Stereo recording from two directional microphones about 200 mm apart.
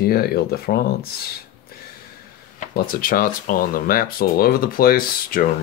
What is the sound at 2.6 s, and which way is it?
Speech, 45° left (ahead or behind).